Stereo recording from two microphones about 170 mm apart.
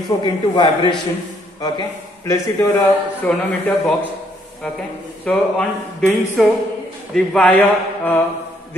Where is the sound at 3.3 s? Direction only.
5° left (ahead or behind).